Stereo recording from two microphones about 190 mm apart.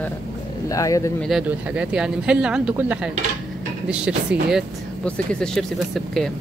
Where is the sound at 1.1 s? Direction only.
Centre (ahead or behind).